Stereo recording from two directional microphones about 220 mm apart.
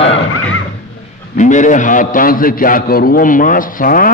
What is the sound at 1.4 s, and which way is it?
A man's voice, 35° left (ahead or behind).